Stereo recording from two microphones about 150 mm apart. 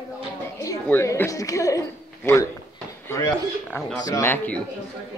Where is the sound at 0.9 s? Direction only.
15° left (ahead or behind).